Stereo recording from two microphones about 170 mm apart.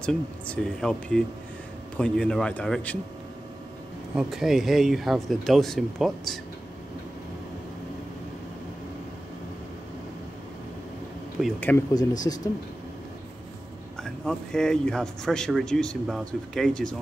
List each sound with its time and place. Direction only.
0.0 s speech: 5° left (ahead or behind)
4.1 s speech: 5° right (ahead or behind)
11.4 s speech: centre (ahead or behind)
11.9 s speech: 20° left (ahead or behind)
13.9 s speech: 5° left (ahead or behind)